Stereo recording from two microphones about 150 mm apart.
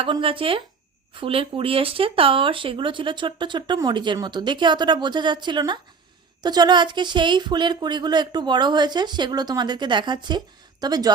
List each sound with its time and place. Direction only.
0.0 s speech: 35° right (ahead or behind)